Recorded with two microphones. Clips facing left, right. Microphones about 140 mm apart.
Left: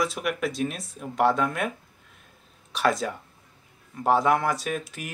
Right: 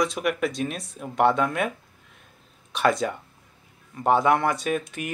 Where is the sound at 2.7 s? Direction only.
Centre (ahead or behind).